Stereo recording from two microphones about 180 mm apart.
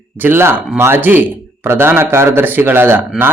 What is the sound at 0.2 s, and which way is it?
Speech, 10° right (ahead or behind).